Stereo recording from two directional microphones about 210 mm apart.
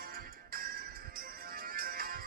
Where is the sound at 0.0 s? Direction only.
45° right (ahead or behind).